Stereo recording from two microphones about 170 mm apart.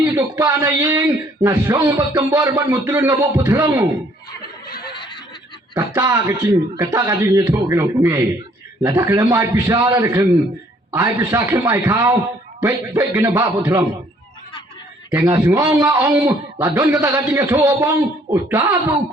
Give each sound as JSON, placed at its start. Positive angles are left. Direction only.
{"t": 0.0, "sound": "a man's voice", "side_deg": -15}
{"t": 4.6, "sound": "snicker", "side_deg": 60}
{"t": 4.9, "sound": "a sound", "side_deg": 30}
{"t": 5.7, "sound": "a man's voice", "side_deg": -15}
{"t": 15.1, "sound": "a man's voice", "side_deg": -15}